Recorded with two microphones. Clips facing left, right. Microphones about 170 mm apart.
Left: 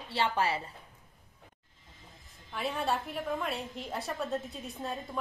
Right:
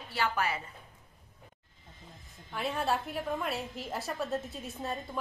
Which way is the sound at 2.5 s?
Centre (ahead or behind).